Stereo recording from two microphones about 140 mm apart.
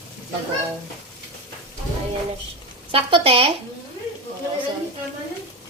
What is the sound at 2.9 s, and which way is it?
Speech, 40° right (ahead or behind).